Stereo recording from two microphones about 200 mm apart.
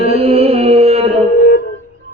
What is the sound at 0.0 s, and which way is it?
Music, 30° right (ahead or behind).